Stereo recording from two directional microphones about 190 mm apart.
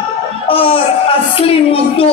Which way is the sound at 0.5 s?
30° left (ahead or behind).